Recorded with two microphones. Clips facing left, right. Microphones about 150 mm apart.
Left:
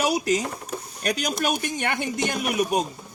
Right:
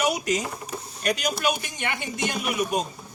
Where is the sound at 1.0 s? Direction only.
45° left (ahead or behind).